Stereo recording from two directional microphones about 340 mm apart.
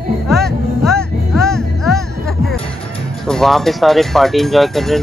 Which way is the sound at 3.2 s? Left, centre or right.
Centre.